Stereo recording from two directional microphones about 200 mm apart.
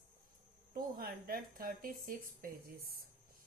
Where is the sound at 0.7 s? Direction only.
45° right (ahead or behind).